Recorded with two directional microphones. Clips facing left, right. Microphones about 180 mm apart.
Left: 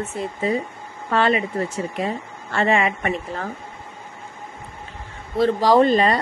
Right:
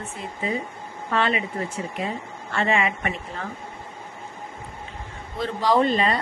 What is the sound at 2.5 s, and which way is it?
Speech, 45° left (ahead or behind).